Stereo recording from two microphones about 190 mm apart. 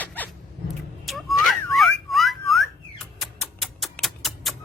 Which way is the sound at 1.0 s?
Centre (ahead or behind).